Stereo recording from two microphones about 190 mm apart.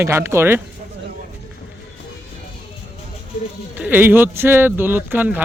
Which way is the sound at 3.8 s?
10° right (ahead or behind).